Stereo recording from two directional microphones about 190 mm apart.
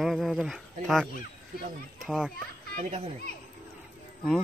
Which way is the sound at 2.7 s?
40° right (ahead or behind).